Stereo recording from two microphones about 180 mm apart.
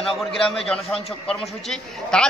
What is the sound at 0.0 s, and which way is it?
A man's voice, centre (ahead or behind).